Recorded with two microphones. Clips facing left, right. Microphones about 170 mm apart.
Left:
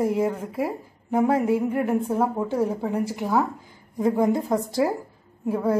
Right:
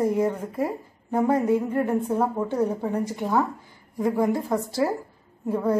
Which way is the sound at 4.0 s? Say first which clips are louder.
Left 2 dB; 20° left (ahead or behind).